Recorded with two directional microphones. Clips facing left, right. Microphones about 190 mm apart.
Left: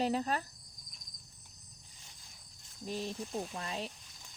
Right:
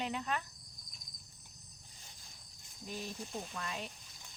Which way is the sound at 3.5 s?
30° left (ahead or behind).